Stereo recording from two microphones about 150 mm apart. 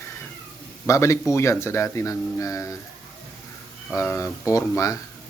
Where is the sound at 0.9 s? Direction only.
20° left (ahead or behind).